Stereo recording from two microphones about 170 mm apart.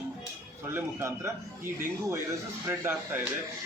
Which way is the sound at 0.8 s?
15° right (ahead or behind).